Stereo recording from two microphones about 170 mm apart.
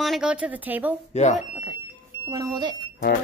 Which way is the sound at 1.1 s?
40° left (ahead or behind).